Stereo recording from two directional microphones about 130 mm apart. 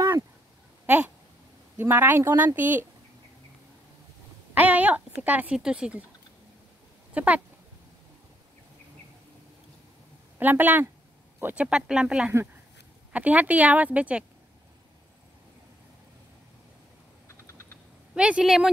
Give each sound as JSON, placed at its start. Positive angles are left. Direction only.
{"t": 0.8, "sound": "a sound", "side_deg": -10}
{"t": 1.8, "sound": "speech", "side_deg": -15}
{"t": 4.6, "sound": "speech", "side_deg": -10}
{"t": 7.2, "sound": "speech", "side_deg": -10}
{"t": 10.4, "sound": "speech", "side_deg": -15}
{"t": 18.1, "sound": "speech", "side_deg": -5}